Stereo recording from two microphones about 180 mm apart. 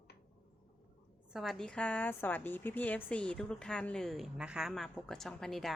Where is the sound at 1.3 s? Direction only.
Centre (ahead or behind).